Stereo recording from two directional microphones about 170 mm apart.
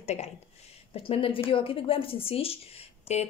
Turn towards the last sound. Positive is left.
turn(degrees=40)  # may be behind; listen again after turning